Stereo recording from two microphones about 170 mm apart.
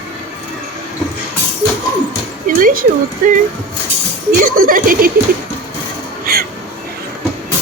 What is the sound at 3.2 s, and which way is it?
Speech, 55° right (ahead or behind).